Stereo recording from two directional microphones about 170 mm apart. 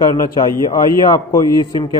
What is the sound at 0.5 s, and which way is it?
A man's voice, 20° left (ahead or behind).